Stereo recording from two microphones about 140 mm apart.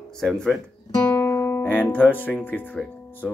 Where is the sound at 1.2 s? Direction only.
15° left (ahead or behind).